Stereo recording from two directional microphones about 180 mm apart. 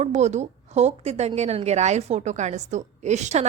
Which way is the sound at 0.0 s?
40° right (ahead or behind).